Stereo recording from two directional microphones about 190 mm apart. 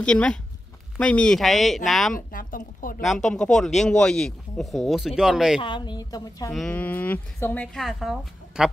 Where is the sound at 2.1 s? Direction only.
45° left (ahead or behind).